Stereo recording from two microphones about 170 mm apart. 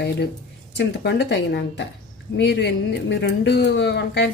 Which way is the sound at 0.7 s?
80° left.